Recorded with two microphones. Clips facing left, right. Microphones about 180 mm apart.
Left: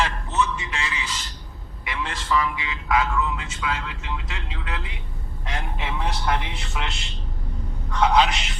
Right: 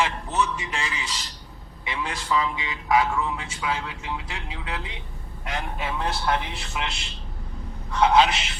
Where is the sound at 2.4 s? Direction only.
25° right (ahead or behind).